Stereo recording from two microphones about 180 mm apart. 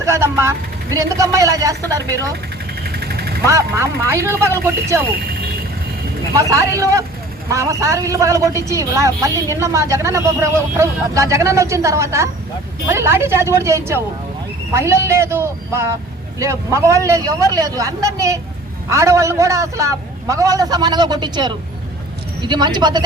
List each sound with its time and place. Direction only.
0.0 s speech: 15° right (ahead or behind)
2.8 s vehicle: 60° right (ahead or behind)
3.4 s speech: 15° right (ahead or behind)
6.3 s speech: 15° right (ahead or behind)